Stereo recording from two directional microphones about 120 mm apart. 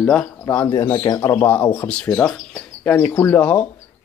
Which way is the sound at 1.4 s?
15° left (ahead or behind).